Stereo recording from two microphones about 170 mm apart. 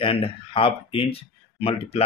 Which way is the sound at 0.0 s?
30° left (ahead or behind).